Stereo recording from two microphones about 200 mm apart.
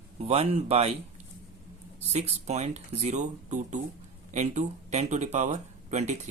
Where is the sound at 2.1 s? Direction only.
35° right (ahead or behind).